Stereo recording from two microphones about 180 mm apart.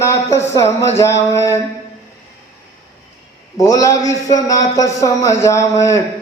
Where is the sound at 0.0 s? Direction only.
15° left (ahead or behind).